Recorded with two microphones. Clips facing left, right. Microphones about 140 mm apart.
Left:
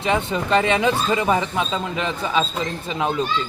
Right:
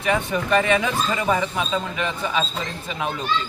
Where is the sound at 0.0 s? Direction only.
25° left (ahead or behind).